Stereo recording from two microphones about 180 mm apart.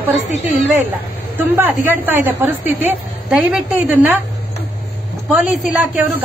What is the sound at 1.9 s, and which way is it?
A woman's voice, 10° right (ahead or behind).